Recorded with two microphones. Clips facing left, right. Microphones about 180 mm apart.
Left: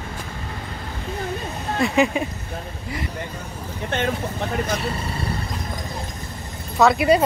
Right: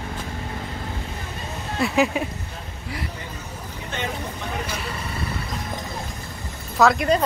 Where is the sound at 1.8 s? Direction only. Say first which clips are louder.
Left 1 dB; centre (ahead or behind).